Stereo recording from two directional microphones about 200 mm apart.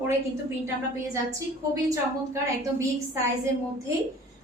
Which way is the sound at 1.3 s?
15° right (ahead or behind).